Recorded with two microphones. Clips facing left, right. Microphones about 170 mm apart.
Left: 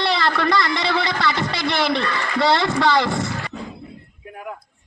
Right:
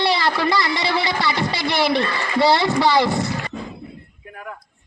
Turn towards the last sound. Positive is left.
turn(degrees=-5)  # may be behind; listen again after turning